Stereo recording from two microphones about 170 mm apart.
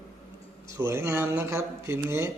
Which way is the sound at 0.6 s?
15° right (ahead or behind).